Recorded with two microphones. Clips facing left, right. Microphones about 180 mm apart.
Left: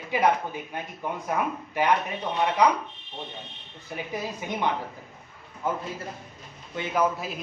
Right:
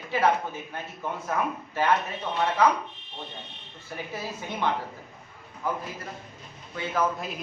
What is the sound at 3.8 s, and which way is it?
A man's voice, 15° left (ahead or behind).